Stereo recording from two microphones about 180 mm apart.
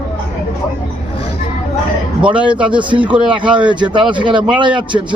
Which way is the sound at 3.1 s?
25° right (ahead or behind).